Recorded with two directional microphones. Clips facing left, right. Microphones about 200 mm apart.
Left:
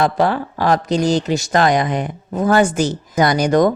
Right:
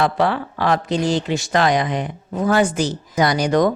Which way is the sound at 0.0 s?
40° left (ahead or behind).